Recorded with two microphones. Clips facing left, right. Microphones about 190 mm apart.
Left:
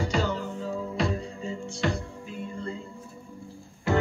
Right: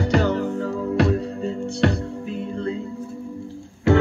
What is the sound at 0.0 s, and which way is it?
Music, 65° right (ahead or behind).